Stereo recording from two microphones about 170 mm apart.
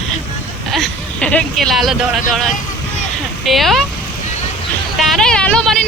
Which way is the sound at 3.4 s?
Centre (ahead or behind).